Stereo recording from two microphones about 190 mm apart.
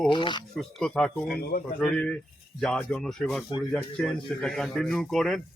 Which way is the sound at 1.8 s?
5° left (ahead or behind).